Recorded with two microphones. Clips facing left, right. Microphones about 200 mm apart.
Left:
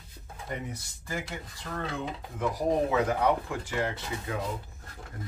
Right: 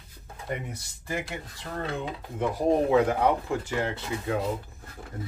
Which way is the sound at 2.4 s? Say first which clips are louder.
Right 3 dB; 30° right (ahead or behind).